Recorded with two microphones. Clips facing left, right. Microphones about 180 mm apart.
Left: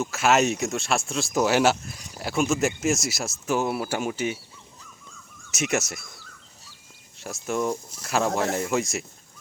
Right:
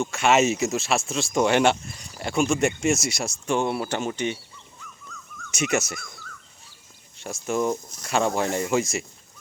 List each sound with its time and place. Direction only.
0.0 s speech: centre (ahead or behind)
5.1 s dog: 30° left (ahead or behind)
5.5 s speech: centre (ahead or behind)
7.2 s speech: centre (ahead or behind)